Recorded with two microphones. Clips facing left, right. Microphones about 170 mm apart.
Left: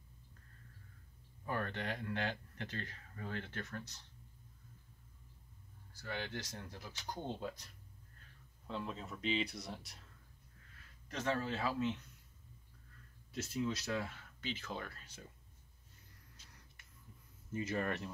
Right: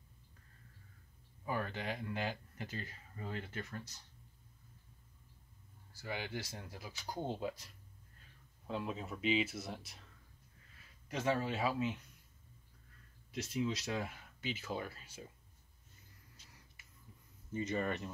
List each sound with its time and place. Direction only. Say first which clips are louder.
1.4 s speech: right 1 dB; 10° right (ahead or behind)
5.9 s speech: right 1 dB; 10° right (ahead or behind)
11.1 s speech: right 2 dB; 10° right (ahead or behind)
13.3 s speech: right 1 dB; 15° right (ahead or behind)
17.5 s speech: right 1 dB; centre (ahead or behind)